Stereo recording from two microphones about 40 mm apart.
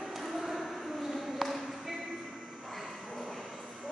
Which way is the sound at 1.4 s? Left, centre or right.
Centre.